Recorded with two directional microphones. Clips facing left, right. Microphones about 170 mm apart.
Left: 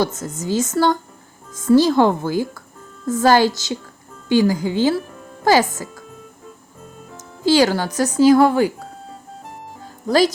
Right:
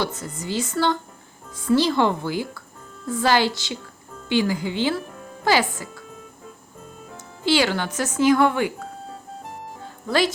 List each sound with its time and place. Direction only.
0.0 s speech: 45° left (ahead or behind)
7.4 s speech: 40° left (ahead or behind)
10.1 s speech: 40° left (ahead or behind)